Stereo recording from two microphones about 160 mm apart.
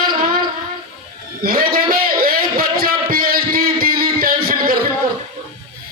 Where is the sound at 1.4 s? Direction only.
65° right (ahead or behind).